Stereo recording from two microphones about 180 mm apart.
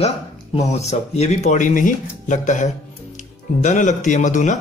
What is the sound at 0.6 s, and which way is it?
Speech, 40° left (ahead or behind).